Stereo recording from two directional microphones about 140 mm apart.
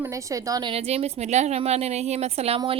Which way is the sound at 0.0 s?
20° right (ahead or behind).